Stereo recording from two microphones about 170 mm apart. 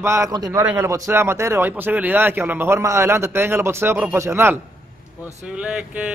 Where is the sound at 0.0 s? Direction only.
15° right (ahead or behind).